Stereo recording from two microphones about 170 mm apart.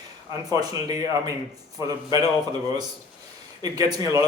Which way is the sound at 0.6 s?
20° right (ahead or behind).